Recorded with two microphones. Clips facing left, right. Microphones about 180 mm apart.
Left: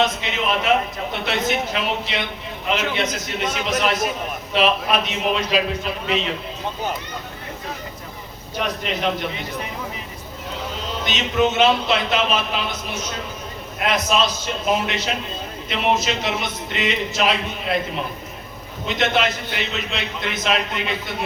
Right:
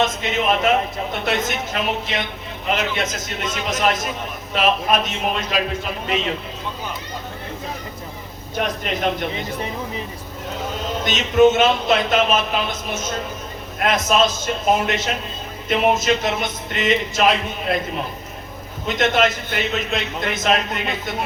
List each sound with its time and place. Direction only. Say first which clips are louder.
0.0 s a man's voice: right 1 dB; 45° right (ahead or behind)
8.5 s a man's voice: right 1 dB; 45° right (ahead or behind)
11.0 s a man's voice: right 6 dB; 45° right (ahead or behind)
18.9 s a man's voice: right 2 dB; 45° right (ahead or behind)